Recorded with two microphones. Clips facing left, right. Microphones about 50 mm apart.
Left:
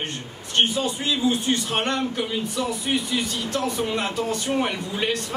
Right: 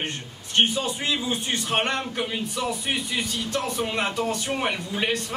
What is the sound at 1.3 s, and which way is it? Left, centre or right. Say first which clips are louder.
Speech: left 3 dB; centre.